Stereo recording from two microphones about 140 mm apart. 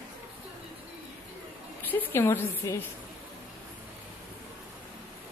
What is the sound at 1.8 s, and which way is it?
A woman's voice, 15° left (ahead or behind).